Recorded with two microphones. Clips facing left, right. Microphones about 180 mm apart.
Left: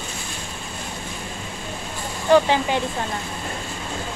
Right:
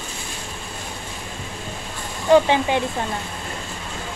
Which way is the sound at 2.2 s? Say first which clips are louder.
Right 1 dB; 20° right (ahead or behind).